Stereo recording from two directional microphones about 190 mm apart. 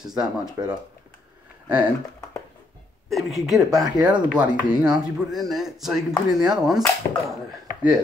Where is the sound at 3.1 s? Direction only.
Centre (ahead or behind).